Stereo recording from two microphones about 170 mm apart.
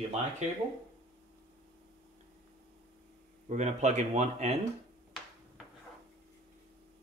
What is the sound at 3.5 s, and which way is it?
Speech, 45° right (ahead or behind).